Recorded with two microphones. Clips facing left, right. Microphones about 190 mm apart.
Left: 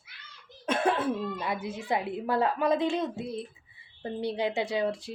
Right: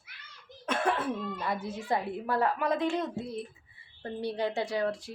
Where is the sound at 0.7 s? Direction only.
25° left (ahead or behind).